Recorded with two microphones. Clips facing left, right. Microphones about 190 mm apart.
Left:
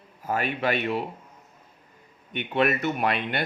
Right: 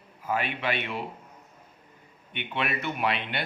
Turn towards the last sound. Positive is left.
turn(degrees=45)  # may be behind; listen again after turning